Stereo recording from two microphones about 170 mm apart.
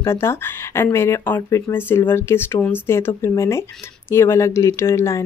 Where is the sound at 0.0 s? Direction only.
15° left (ahead or behind).